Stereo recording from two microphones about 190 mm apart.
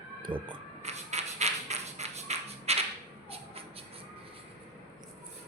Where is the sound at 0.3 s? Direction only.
25° right (ahead or behind).